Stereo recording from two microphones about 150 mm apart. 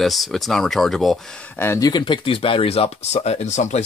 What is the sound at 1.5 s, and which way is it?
Speech, 20° left (ahead or behind).